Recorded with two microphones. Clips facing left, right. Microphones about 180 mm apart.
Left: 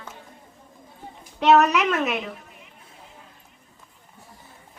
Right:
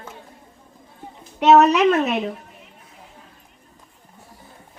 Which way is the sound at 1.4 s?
25° right (ahead or behind).